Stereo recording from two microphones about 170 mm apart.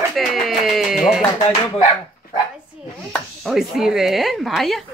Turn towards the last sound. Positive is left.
turn(degrees=0)  # may be behind; listen again after turning